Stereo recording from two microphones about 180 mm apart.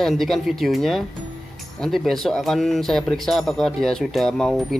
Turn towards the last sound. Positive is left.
turn(degrees=0)  # may be behind; listen again after turning